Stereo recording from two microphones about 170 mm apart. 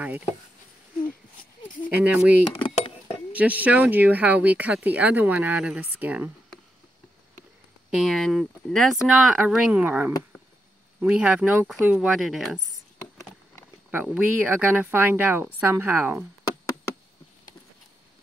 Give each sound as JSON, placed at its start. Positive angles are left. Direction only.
{"t": 1.9, "sound": "speech", "side_deg": -10}
{"t": 2.5, "sound": "a sound", "side_deg": 35}
{"t": 3.3, "sound": "speech", "side_deg": -10}
{"t": 7.9, "sound": "speech", "side_deg": 0}
{"t": 13.8, "sound": "speech", "side_deg": -10}